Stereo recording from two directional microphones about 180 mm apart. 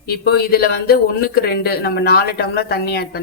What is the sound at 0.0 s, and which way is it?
Speech, 60° left (ahead or behind).